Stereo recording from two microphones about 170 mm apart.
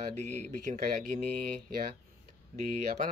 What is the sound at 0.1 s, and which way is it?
Speech, 40° right (ahead or behind).